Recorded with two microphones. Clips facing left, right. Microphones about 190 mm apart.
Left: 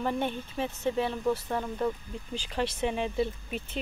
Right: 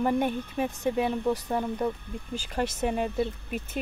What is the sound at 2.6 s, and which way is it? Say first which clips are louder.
Speech: right 1 dB; 45° right (ahead or behind).